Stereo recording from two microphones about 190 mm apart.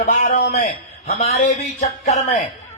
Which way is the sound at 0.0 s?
40° left (ahead or behind).